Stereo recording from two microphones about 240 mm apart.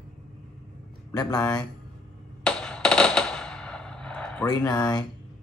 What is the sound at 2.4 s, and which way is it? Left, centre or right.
Machine gun, centre.